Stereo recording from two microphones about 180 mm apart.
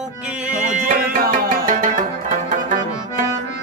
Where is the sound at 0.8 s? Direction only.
55° right (ahead or behind).